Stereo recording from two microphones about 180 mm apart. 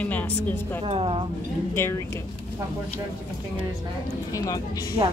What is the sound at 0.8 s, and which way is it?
Speech, 30° right (ahead or behind).